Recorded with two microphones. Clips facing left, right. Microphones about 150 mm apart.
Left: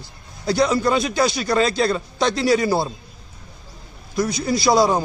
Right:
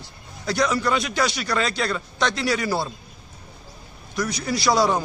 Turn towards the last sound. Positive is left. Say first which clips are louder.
# left 4 dB
turn(degrees=30)  # may be behind; listen again after turning